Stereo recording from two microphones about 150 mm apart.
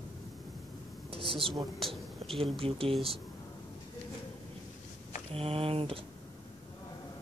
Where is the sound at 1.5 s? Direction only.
Centre (ahead or behind).